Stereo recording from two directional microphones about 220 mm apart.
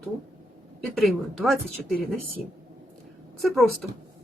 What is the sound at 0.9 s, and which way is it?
Speech, centre (ahead or behind).